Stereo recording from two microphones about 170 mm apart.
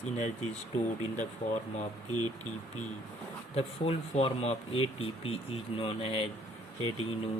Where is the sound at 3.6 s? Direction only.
35° left (ahead or behind).